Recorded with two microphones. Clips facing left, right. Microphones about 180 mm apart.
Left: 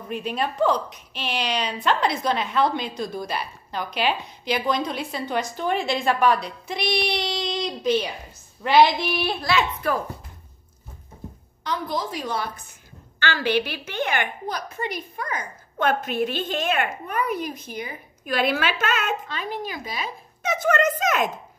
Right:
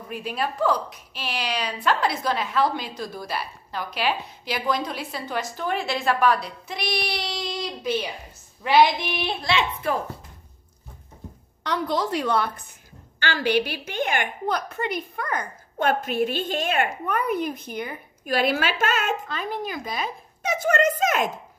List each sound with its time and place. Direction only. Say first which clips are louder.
0.1 s speech: left 2 dB; 5° right (ahead or behind)
0.6 s speech: left 2 dB; 20° left (ahead or behind)
0.8 s a woman's voice: left 2 dB; 5° right (ahead or behind)
8.6 s a woman's voice: left 1 dB; 20° right (ahead or behind)
11.6 s a woman's voice: right 3 dB; 70° right (ahead or behind)
13.2 s a woman's voice: even; 45° right (ahead or behind)
20.4 s a child's voice: even; 45° left (ahead or behind)
21.0 s a woman's voice: even; 45° right (ahead or behind)